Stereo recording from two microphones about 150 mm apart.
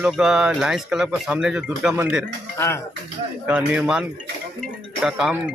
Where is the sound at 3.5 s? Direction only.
5° right (ahead or behind).